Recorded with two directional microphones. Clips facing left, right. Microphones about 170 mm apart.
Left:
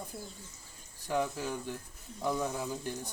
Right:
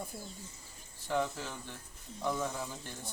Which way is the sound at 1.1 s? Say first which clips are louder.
Left 2 dB; 10° left (ahead or behind).